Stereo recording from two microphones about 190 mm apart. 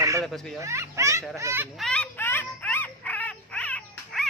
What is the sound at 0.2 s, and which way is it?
Speech, centre (ahead or behind).